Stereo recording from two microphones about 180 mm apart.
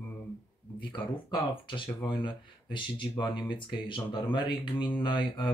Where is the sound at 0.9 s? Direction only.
25° left (ahead or behind).